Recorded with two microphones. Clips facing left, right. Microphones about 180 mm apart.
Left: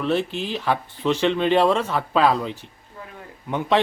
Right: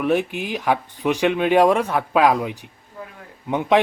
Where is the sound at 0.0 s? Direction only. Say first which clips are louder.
Right 2 dB; 15° right (ahead or behind).